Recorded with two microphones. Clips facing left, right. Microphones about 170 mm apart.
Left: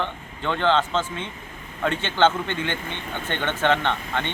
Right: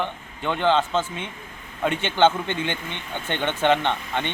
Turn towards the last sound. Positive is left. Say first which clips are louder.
# right 1 dB
turn(degrees=-15)  # may be behind; listen again after turning